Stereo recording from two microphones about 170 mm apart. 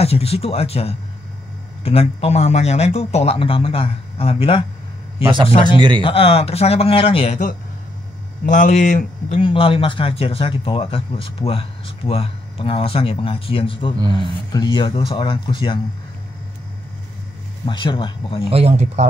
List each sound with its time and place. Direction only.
0.0 s speech: 35° left (ahead or behind)
5.8 s a man's voice: 30° right (ahead or behind)
6.0 s speech: 35° left (ahead or behind)
8.5 s speech: 50° left (ahead or behind)
9.4 s speech: 30° left (ahead or behind)
17.6 s speech: 25° left (ahead or behind)
18.5 s speech: 35° right (ahead or behind)